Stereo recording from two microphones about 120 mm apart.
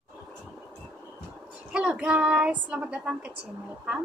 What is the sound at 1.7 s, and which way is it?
A woman's voice, 10° right (ahead or behind).